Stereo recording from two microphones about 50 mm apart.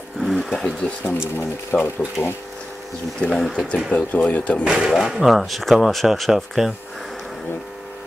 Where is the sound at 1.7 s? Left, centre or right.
Centre.